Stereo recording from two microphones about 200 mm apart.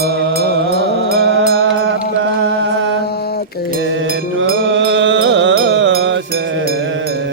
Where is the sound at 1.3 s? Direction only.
70° right (ahead or behind).